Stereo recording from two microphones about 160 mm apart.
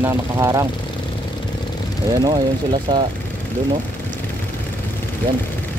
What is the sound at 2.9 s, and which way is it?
Speech, 30° right (ahead or behind).